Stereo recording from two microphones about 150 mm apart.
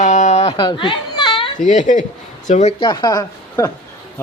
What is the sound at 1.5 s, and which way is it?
Speech, 55° left (ahead or behind).